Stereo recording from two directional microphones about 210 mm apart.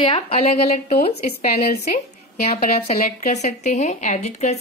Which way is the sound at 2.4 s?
30° left (ahead or behind).